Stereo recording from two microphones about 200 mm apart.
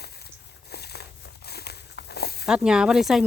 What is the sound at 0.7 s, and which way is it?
Walk, 55° left (ahead or behind).